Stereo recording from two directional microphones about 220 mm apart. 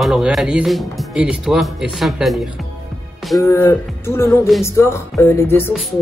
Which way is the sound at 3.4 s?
10° left (ahead or behind).